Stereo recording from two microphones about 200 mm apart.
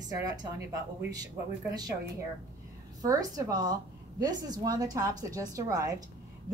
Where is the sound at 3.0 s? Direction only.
20° right (ahead or behind).